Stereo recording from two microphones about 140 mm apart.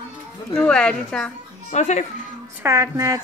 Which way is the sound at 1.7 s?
55° left (ahead or behind).